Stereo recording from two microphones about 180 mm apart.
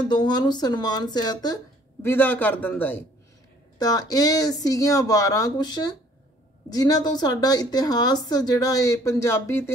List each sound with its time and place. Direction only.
0.1 s a woman's voice: 25° left (ahead or behind)
2.0 s a man's voice: 10° left (ahead or behind)
3.7 s a woman's voice: 20° left (ahead or behind)